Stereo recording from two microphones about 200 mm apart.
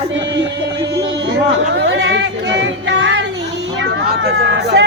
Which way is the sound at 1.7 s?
60° right (ahead or behind).